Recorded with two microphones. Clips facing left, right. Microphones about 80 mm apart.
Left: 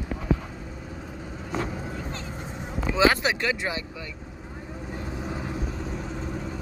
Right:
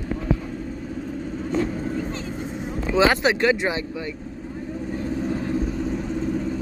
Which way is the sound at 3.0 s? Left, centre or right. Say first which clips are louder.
Right 4 dB; right.